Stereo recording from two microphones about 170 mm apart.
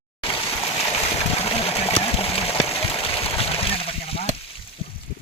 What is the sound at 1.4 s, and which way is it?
Water, 35° left (ahead or behind).